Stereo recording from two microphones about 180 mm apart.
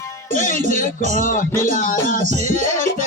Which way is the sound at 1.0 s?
45° left (ahead or behind).